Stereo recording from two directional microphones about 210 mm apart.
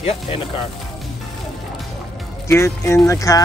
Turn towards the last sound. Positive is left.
turn(degrees=15)  # may be behind; listen again after turning